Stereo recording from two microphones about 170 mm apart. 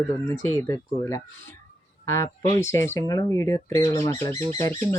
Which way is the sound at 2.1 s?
15° left (ahead or behind).